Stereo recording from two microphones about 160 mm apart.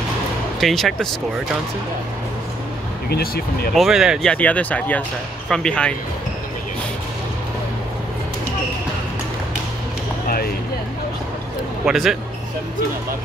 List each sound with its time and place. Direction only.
0.6 s speech: centre (ahead or behind)
3.1 s speech: 75° left (ahead or behind)
3.7 s speech: centre (ahead or behind)
10.2 s a sound: 65° left (ahead or behind)
11.8 s speech: centre (ahead or behind)